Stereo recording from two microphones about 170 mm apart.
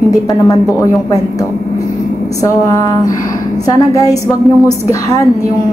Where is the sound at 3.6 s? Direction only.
20° left (ahead or behind).